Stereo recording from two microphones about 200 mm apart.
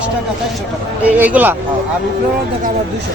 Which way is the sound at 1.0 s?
10° right (ahead or behind).